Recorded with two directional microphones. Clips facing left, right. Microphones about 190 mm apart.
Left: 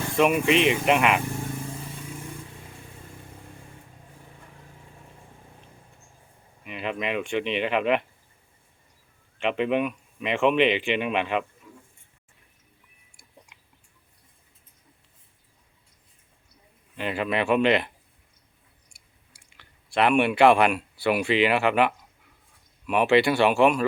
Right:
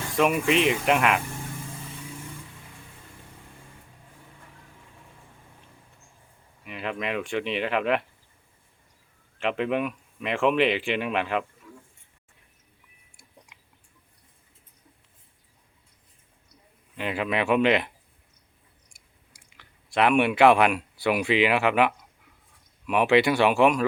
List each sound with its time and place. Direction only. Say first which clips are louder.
0.2 s speech: left 1 dB; 5° left (ahead or behind)
6.7 s speech: left 1 dB; 5° left (ahead or behind)
9.4 s speech: left 2 dB; centre (ahead or behind)
17.0 s speech: left 1 dB; 5° right (ahead or behind)
19.5 s speech: even; 5° right (ahead or behind)